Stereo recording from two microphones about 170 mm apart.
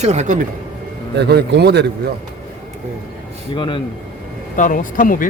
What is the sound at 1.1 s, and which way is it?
Speech, 75° right (ahead or behind).